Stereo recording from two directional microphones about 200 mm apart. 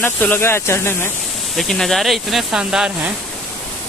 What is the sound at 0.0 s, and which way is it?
Speech, 10° left (ahead or behind).